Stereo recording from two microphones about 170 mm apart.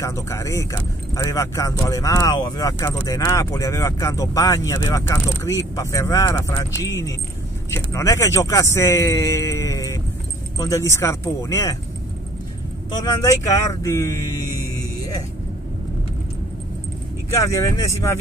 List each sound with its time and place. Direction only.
0.0 s speech: 15° left (ahead or behind)
13.0 s speech: 20° left (ahead or behind)
17.3 s speech: 15° left (ahead or behind)